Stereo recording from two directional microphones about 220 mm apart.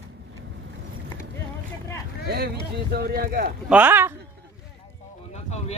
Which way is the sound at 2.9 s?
45° right (ahead or behind).